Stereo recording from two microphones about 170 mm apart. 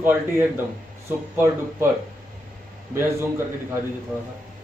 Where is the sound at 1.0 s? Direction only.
15° right (ahead or behind).